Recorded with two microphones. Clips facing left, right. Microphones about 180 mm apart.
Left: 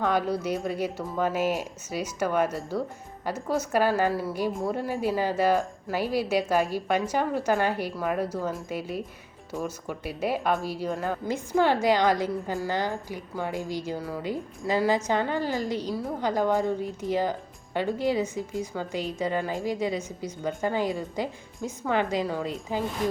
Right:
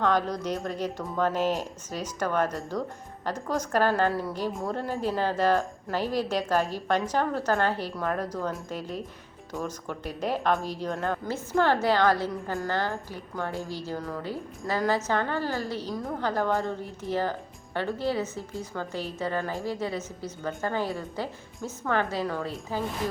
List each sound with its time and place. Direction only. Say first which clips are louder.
0.0 s a woman's voice: even; 10° left (ahead or behind)